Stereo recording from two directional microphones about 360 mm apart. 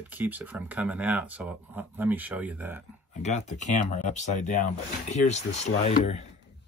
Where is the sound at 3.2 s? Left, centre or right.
Centre.